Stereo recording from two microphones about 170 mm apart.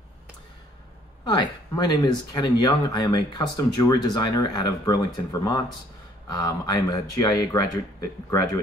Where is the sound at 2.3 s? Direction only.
25° left (ahead or behind).